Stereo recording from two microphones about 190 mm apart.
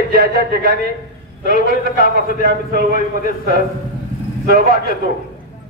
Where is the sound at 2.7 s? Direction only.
50° right (ahead or behind).